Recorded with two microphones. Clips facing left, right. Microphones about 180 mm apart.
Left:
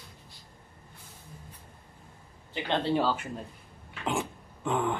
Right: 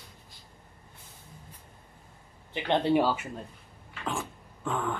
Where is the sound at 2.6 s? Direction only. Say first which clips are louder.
Right 3 dB; 15° right (ahead or behind).